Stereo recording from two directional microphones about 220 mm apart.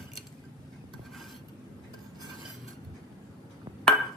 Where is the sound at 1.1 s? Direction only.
Centre (ahead or behind).